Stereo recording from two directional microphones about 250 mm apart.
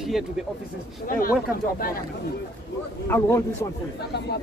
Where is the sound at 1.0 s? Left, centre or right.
Left.